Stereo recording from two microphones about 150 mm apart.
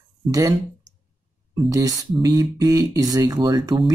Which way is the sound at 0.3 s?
20° right (ahead or behind).